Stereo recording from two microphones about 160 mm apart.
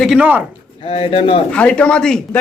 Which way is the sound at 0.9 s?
35° left (ahead or behind).